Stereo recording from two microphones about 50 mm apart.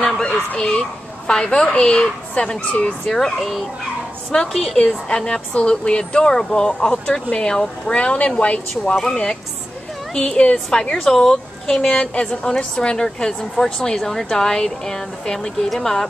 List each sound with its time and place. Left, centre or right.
0.0 s fowl: centre
0.6 s a woman's voice: centre
3.1 s a woman's voice: centre
4.7 s a woman's voice: centre
7.9 s a woman's voice: left; by 16.1 s centre